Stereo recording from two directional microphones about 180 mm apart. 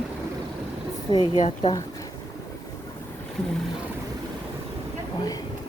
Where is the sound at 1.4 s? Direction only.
40° left (ahead or behind).